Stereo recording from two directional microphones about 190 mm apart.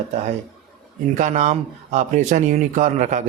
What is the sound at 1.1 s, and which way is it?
Speech, 40° right (ahead or behind).